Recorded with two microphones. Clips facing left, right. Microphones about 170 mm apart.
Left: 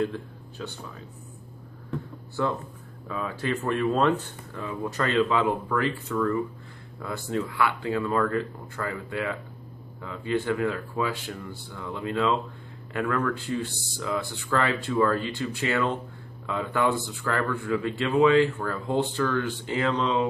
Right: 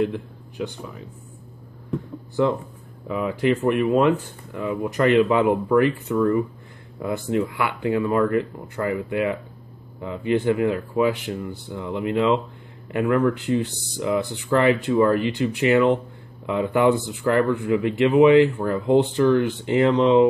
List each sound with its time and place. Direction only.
0.0 s speech: 15° right (ahead or behind)
2.4 s speech: 20° right (ahead or behind)